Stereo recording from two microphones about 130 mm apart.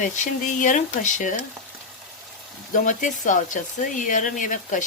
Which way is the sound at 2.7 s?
85° left.